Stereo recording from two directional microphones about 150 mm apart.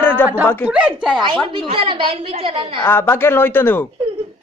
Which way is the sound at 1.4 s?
35° right (ahead or behind).